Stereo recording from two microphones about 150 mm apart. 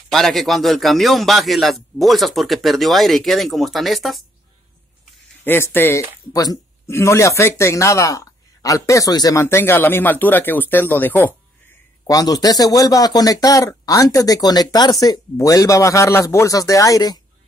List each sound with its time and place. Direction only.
0.1 s a man's voice: centre (ahead or behind)
5.4 s speech: 15° left (ahead or behind)
12.1 s speech: 25° left (ahead or behind)